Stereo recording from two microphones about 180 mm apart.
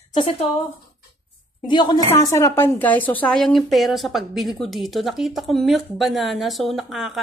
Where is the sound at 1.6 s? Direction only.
25° left (ahead or behind).